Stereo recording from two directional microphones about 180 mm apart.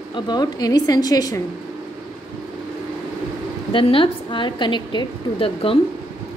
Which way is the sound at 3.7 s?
30° left (ahead or behind).